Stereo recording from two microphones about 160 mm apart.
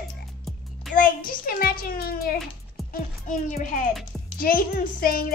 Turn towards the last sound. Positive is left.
turn(degrees=65)  # may be behind; listen again after turning